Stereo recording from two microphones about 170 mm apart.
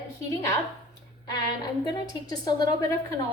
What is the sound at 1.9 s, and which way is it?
Speech, 25° left (ahead or behind).